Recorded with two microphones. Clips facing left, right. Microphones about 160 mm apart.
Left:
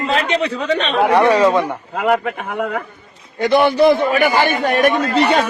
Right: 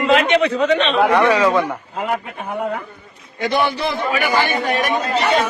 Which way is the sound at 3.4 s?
55° left (ahead or behind).